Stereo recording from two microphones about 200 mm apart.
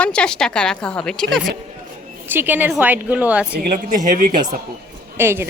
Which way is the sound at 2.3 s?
10° right (ahead or behind).